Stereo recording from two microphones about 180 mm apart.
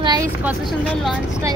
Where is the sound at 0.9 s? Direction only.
Centre (ahead or behind).